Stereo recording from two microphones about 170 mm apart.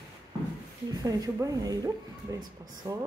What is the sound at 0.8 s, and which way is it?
Speech, 25° right (ahead or behind).